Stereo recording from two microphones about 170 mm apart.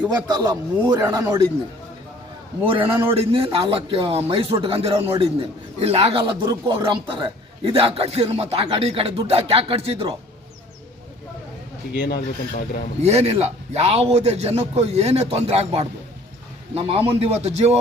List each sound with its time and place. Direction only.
0.3 s a man's voice: 20° right (ahead or behind)
2.6 s a man's voice: 30° right (ahead or behind)
6.4 s a man's voice: 20° right (ahead or behind)
11.9 s speech: 90° left
13.0 s a man's voice: 40° right (ahead or behind)